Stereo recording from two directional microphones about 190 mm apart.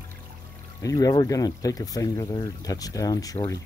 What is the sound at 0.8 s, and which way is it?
Speech, 20° left (ahead or behind).